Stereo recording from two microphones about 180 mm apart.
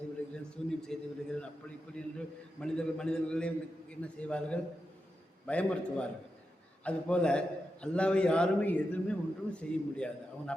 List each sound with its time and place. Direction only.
0.3 s a man's voice: 5° left (ahead or behind)
2.0 s a man's voice: 5° left (ahead or behind)